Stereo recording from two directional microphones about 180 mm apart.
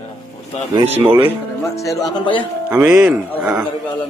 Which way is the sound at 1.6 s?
15° left (ahead or behind).